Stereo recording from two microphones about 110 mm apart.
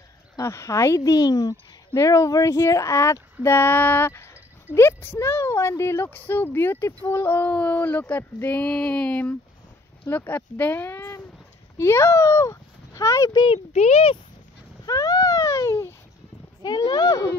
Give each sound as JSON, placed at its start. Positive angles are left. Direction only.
{"t": 0.4, "sound": "speech", "side_deg": 25}
{"t": 13.7, "sound": "speech", "side_deg": 75}
{"t": 14.9, "sound": "a sound", "side_deg": 35}
{"t": 16.6, "sound": "speech", "side_deg": 40}